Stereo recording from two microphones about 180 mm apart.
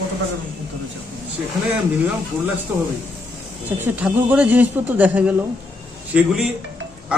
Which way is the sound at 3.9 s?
10° right (ahead or behind).